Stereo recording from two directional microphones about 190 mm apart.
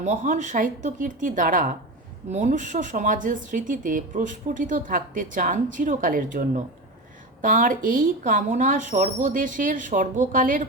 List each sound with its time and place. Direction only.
0.0 s speech: 40° right (ahead or behind)